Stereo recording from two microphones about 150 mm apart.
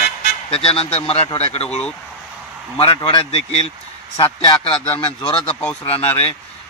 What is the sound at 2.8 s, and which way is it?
Speech, 35° left (ahead or behind).